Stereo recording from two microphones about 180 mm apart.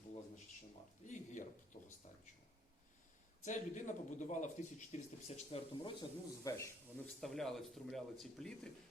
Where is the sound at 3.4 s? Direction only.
45° left (ahead or behind); by 6.7 s 20° left (ahead or behind).